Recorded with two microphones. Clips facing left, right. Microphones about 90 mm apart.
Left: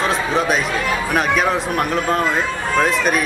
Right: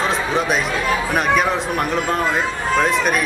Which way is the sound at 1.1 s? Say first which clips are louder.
Left 1 dB; centre (ahead or behind).